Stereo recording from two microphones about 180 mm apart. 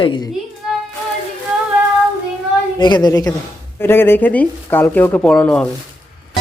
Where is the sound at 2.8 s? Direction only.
25° left (ahead or behind); by 5.7 s 5° left (ahead or behind).